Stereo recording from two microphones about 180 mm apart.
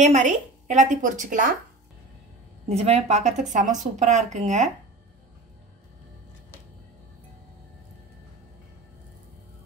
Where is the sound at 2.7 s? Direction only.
35° right (ahead or behind).